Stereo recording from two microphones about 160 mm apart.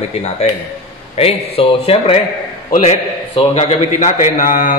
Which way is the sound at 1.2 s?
40° left (ahead or behind).